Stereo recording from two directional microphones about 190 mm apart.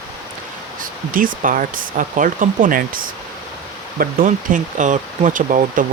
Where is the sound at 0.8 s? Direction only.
45° right (ahead or behind).